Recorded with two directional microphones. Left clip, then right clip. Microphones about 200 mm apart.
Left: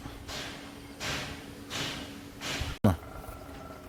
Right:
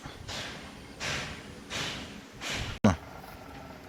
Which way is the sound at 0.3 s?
35° right (ahead or behind).